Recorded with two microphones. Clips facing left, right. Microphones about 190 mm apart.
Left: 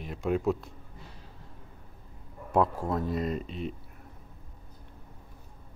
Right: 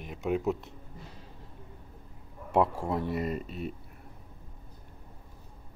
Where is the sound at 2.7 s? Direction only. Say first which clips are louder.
Left 1 dB; 25° right (ahead or behind).